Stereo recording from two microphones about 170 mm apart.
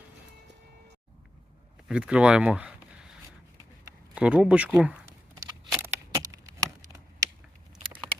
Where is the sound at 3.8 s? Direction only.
5° right (ahead or behind).